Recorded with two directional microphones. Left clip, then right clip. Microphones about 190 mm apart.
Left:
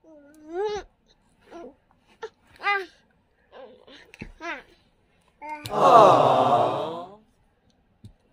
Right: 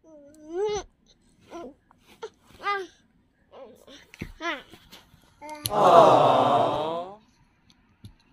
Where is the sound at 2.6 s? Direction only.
15° left (ahead or behind).